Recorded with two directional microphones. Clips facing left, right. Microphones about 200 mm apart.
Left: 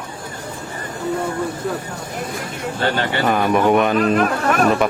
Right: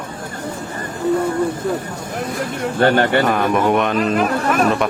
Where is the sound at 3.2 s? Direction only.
Centre (ahead or behind).